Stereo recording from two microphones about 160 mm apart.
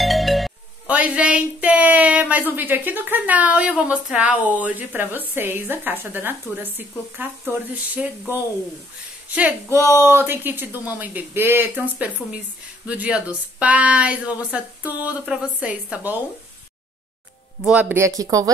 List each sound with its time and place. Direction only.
0.0 s music: centre (ahead or behind)
2.5 s speech: 10° right (ahead or behind)
17.6 s speech: 10° right (ahead or behind)